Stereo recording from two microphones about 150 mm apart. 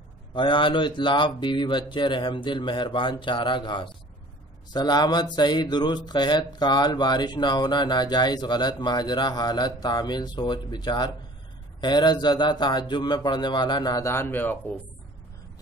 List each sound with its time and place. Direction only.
0.3 s speech: 30° left (ahead or behind); by 14.6 s 15° left (ahead or behind)